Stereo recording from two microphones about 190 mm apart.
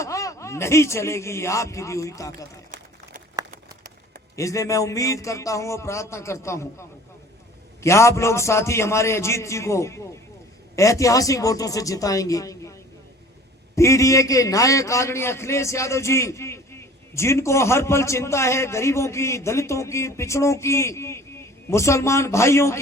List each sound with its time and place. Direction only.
0.0 s speech: 15° left (ahead or behind)
4.4 s a man's voice: 15° left (ahead or behind)
13.7 s a man's voice: 15° left (ahead or behind)